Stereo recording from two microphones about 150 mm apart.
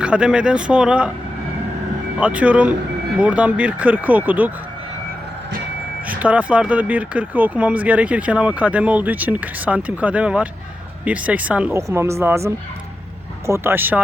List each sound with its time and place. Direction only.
0.0 s speech: 5° right (ahead or behind)
2.2 s speech: 10° right (ahead or behind)
6.1 s speech: 10° right (ahead or behind)
11.8 s speech: 20° right (ahead or behind)